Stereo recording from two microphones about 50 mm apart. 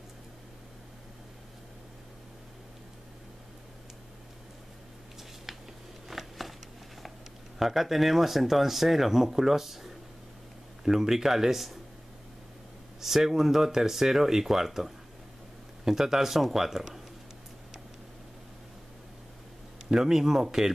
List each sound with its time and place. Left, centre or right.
5.5 s a sound: centre
7.5 s speech: centre
13.0 s speech: centre
19.9 s speech: centre